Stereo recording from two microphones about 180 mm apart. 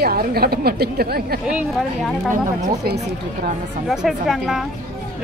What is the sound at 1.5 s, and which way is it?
Speech, 5° right (ahead or behind).